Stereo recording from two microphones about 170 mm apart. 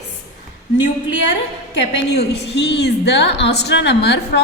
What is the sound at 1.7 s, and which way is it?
A woman's voice, 90° left.